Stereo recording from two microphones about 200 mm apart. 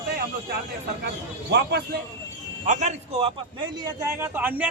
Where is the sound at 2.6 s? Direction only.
35° right (ahead or behind).